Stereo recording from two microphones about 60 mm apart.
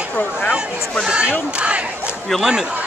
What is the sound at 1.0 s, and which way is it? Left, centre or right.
Speech, centre.